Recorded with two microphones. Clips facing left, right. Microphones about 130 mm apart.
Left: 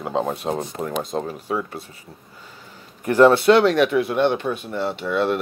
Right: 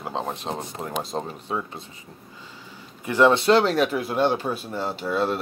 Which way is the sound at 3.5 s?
Centre (ahead or behind).